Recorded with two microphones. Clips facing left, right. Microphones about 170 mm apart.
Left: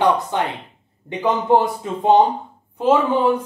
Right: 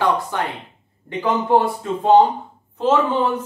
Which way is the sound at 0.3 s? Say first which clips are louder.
Left 2 dB; 20° left (ahead or behind).